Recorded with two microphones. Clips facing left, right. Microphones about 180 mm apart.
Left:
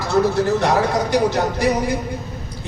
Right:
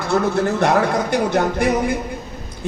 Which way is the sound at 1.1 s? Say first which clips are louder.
Even; 55° right (ahead or behind).